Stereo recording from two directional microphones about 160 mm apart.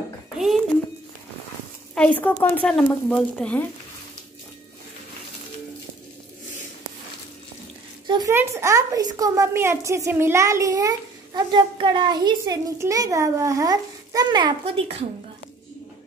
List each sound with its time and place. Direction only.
2.0 s speech: 10° left (ahead or behind)
8.3 s a woman's voice: 15° right (ahead or behind); by 15.0 s 35° right (ahead or behind)